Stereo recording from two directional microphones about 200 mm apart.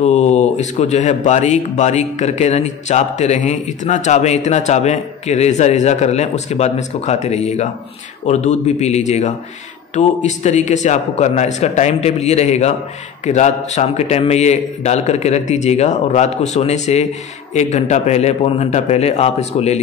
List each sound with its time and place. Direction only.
0.0 s speech: 35° left (ahead or behind)